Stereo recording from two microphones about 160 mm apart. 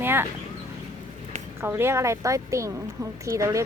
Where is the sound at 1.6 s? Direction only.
15° right (ahead or behind).